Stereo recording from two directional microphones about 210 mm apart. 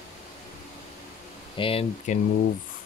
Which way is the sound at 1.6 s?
25° left (ahead or behind).